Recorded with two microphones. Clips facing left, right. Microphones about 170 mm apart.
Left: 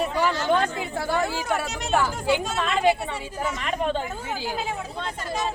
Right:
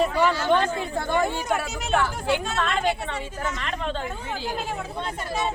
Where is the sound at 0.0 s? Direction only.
10° left (ahead or behind).